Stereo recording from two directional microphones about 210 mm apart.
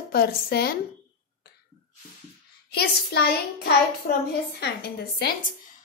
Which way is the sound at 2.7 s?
50° left (ahead or behind).